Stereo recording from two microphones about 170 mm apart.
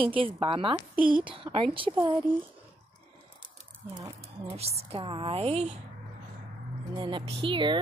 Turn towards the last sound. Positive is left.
turn(degrees=-30)  # may be behind; listen again after turning